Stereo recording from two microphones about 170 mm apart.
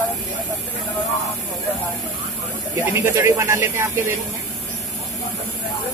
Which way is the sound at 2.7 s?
15° right (ahead or behind).